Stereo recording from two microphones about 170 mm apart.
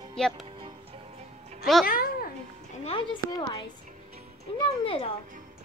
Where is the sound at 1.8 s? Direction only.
60° left (ahead or behind).